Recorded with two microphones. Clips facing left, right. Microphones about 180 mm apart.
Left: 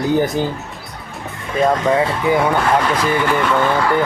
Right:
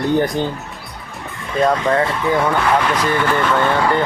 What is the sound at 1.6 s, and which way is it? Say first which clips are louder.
Speech: left 1 dB; 10° left (ahead or behind).